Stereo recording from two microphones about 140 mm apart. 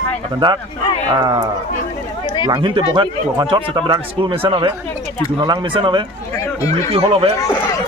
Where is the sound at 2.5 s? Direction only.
35° right (ahead or behind).